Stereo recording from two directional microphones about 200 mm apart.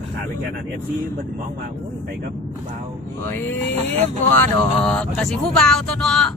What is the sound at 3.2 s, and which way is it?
Speech, 10° left (ahead or behind).